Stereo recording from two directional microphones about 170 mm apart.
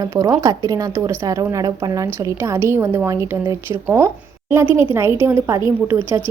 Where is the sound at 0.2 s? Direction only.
20° right (ahead or behind).